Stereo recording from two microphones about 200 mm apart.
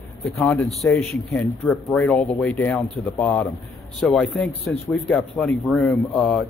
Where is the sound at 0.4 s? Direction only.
10° left (ahead or behind).